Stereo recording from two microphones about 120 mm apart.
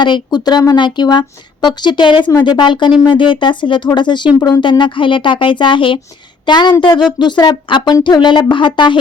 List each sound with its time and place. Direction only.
0.0 s speech: 40° left (ahead or behind)